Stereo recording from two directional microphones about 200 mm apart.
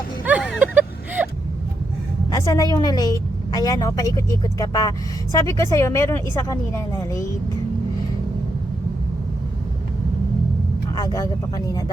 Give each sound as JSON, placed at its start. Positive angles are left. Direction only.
{"t": 0.3, "sound": "a sound", "side_deg": -5}
{"t": 2.3, "sound": "a woman's voice", "side_deg": 15}
{"t": 10.9, "sound": "a woman's voice", "side_deg": 20}